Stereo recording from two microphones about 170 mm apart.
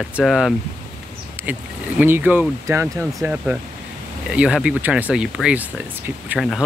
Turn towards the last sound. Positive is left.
turn(degrees=-5)  # may be behind; listen again after turning